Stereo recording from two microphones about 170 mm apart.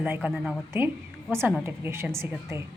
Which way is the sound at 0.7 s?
15° right (ahead or behind).